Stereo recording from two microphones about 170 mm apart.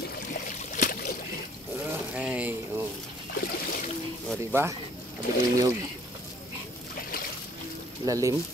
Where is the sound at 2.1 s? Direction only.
10° right (ahead or behind).